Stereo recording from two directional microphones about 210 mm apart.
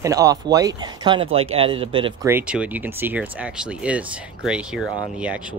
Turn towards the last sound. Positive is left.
turn(degrees=-5)  # may be behind; listen again after turning